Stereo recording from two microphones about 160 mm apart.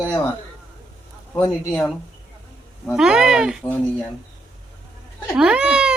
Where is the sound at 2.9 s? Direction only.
5° right (ahead or behind).